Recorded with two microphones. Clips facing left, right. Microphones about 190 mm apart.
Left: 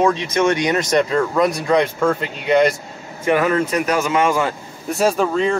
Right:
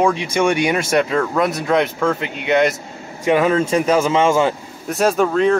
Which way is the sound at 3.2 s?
25° right (ahead or behind).